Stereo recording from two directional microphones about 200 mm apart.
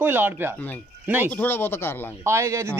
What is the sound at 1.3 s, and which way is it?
Speech, 10° left (ahead or behind).